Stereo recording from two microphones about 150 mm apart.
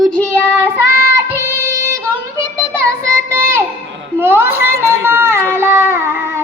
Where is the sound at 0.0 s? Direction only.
10° left (ahead or behind).